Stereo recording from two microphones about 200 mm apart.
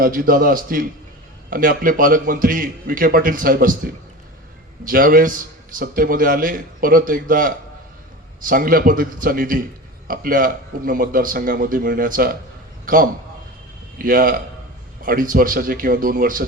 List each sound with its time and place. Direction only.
0.0 s a man's voice: 45° right (ahead or behind)